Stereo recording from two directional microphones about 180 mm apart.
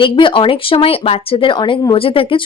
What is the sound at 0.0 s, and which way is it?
Speech, 30° left (ahead or behind).